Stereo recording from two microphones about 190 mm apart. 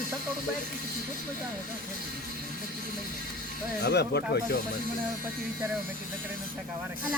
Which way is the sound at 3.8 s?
60° left (ahead or behind).